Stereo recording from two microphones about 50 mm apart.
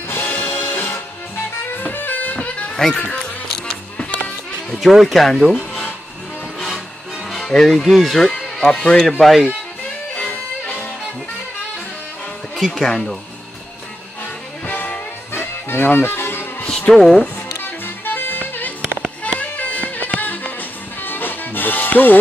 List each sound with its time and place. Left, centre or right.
0.1 s music: left
2.7 s children playing: centre
3.1 s music: centre
4.7 s speech: centre
7.2 s music: centre
7.8 s speech: centre
9.2 s speech: centre
10.1 s music: left
12.5 s speech: centre
14.7 s music: left
16.9 s speech: centre
17.6 s music: left